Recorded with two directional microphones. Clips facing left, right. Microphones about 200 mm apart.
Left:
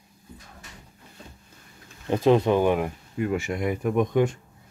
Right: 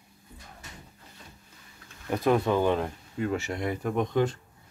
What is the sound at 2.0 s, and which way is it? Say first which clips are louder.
Speech: left 5 dB; 20° left (ahead or behind).